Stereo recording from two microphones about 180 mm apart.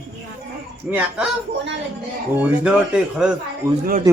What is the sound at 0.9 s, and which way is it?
Speech, 5° right (ahead or behind).